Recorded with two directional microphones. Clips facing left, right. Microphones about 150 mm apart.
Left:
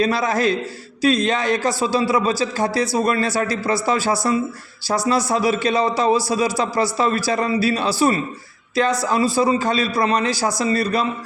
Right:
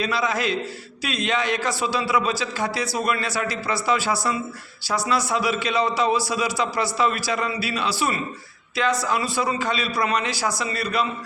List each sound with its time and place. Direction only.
0.0 s a man's voice: 45° left (ahead or behind)